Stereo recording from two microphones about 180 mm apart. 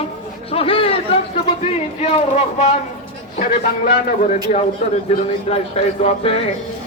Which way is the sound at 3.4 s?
50° left (ahead or behind).